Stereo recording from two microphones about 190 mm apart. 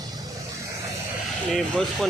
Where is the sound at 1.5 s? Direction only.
Centre (ahead or behind).